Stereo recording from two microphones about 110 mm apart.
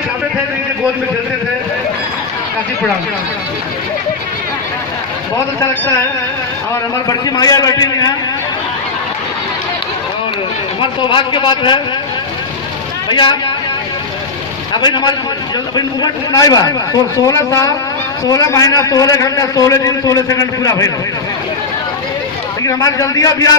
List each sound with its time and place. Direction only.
7.1 s a man's voice: 35° left (ahead or behind)
10.8 s a man's voice: 50° left (ahead or behind)
13.1 s a man's voice: 45° left (ahead or behind)
14.8 s a man's voice: 40° left (ahead or behind)
22.6 s a man's voice: 30° left (ahead or behind)